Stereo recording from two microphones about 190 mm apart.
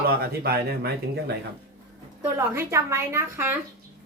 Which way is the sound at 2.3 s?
15° right (ahead or behind).